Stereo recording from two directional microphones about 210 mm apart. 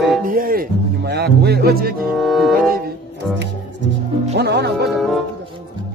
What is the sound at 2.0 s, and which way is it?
Music, centre (ahead or behind).